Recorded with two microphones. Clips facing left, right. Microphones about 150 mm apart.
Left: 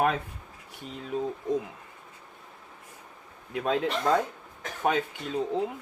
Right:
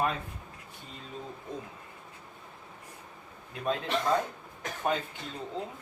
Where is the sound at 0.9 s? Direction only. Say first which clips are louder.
Left 11 dB; 75° left (ahead or behind).